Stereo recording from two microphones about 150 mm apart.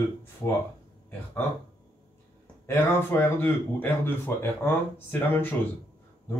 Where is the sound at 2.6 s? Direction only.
15° left (ahead or behind).